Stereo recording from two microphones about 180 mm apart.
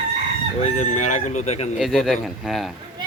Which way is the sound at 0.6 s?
40° left (ahead or behind).